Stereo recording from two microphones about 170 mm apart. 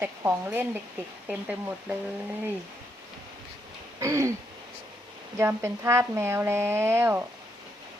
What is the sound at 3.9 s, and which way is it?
Speech, 15° right (ahead or behind).